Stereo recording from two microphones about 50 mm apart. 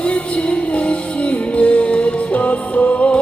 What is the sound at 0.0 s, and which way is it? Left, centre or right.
Music, left.